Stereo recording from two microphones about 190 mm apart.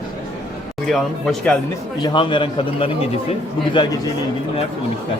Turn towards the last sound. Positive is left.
turn(degrees=25)  # may be behind; listen again after turning